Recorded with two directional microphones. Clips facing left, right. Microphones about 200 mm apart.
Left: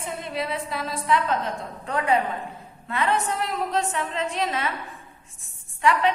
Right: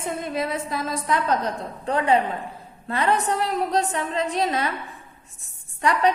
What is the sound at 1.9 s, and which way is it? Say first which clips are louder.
A woman's voice: right 3 dB; 30° right (ahead or behind).